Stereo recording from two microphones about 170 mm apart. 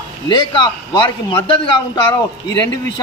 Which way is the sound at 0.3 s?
25° left (ahead or behind).